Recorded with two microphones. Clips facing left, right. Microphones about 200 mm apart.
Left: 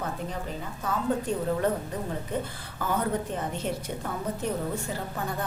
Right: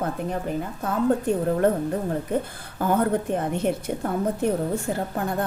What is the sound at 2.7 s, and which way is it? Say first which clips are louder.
A woman's voice: right 6 dB; 55° right (ahead or behind).